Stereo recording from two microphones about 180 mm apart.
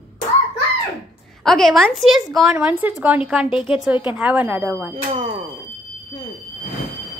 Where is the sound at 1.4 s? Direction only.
Centre (ahead or behind).